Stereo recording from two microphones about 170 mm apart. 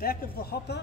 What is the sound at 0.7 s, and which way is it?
Speech, 90° left.